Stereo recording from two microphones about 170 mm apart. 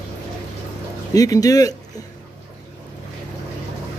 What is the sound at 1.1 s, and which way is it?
Speech, 20° left (ahead or behind).